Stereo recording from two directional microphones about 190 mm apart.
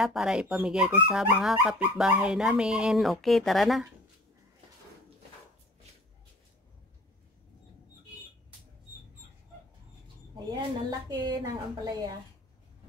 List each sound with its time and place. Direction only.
0.0 s speech: centre (ahead or behind)
10.3 s a woman's voice: 20° right (ahead or behind)